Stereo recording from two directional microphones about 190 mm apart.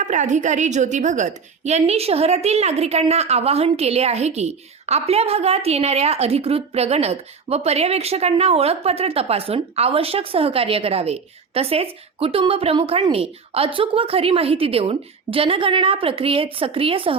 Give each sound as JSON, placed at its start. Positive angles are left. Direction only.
{"t": 0.0, "sound": "a woman's voice", "side_deg": -40}